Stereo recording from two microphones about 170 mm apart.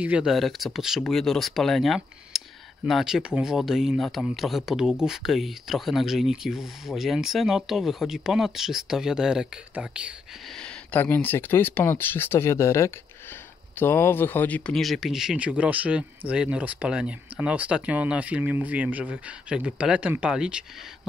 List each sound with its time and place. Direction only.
0.0 s speech: 5° right (ahead or behind)
10.6 s speech: 5° left (ahead or behind)